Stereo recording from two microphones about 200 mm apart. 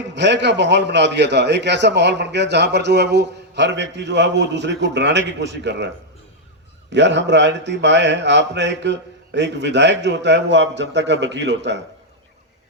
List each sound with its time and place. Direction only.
0.1 s a man's voice: 60° right (ahead or behind)
6.9 s a man's voice: 60° right (ahead or behind)